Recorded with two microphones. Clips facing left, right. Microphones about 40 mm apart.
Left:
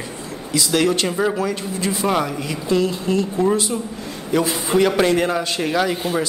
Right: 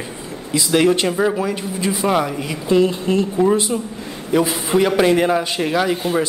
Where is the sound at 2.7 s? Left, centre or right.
Right.